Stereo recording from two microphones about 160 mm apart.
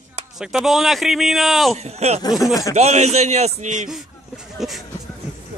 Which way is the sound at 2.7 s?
45° right (ahead or behind).